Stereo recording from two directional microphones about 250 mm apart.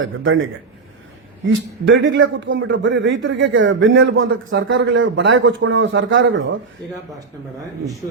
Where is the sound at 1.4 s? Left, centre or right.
Right.